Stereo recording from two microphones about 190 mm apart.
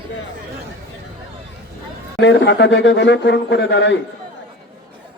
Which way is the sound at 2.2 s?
65° left (ahead or behind).